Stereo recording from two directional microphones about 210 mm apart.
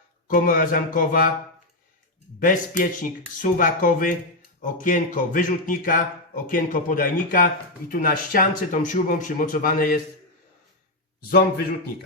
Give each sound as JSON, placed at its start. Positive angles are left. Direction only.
{"t": 0.3, "sound": "a man's voice", "side_deg": 40}
{"t": 2.4, "sound": "a man's voice", "side_deg": 40}
{"t": 11.2, "sound": "a man's voice", "side_deg": 50}